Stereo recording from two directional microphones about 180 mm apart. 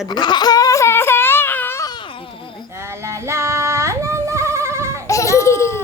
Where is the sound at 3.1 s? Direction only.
15° right (ahead or behind).